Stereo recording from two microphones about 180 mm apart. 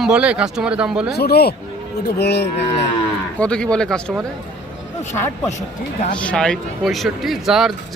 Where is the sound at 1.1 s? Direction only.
60° left (ahead or behind).